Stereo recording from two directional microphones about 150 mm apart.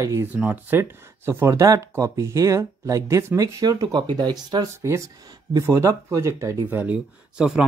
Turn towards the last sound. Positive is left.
turn(degrees=-5)  # may be behind; listen again after turning